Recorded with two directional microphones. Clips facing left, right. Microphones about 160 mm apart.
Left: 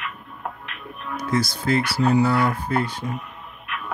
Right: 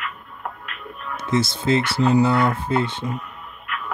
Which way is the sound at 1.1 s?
25° right (ahead or behind).